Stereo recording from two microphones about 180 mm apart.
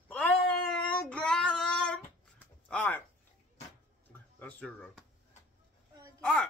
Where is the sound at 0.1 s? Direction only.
5° left (ahead or behind).